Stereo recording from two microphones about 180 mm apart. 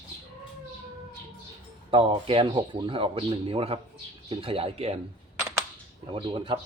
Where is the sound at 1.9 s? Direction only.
30° right (ahead or behind).